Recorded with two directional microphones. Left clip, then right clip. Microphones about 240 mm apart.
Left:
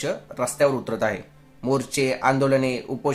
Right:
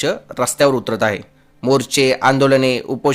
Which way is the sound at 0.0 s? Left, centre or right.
Right.